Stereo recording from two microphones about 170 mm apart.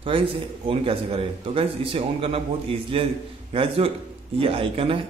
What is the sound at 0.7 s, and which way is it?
Speech, 35° right (ahead or behind).